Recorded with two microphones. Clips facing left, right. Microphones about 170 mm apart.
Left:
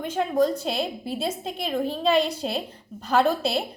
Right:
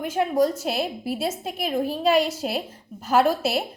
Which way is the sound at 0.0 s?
10° right (ahead or behind).